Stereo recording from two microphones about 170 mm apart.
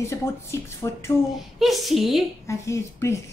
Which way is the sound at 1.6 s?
Centre (ahead or behind).